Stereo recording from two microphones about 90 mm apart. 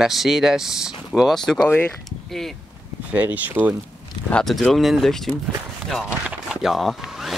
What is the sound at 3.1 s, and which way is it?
Speech, 20° right (ahead or behind).